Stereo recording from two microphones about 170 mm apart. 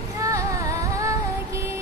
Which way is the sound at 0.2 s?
20° right (ahead or behind).